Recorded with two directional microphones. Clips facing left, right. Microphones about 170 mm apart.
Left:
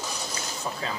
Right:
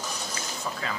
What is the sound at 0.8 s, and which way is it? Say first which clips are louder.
Speech: left 1 dB; 30° left (ahead or behind).